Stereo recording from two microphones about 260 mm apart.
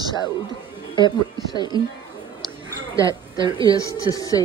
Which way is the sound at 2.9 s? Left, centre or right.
Centre.